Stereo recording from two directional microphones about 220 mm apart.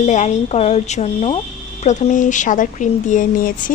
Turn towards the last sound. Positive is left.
turn(degrees=35)  # may be behind; listen again after turning